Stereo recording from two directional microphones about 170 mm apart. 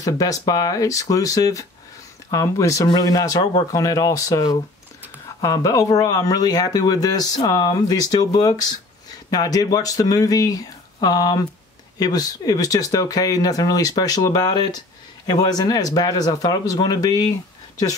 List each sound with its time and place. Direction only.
0.0 s speech: 20° left (ahead or behind)